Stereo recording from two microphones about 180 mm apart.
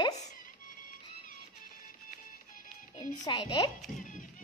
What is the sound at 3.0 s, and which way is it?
Speech, 25° left (ahead or behind).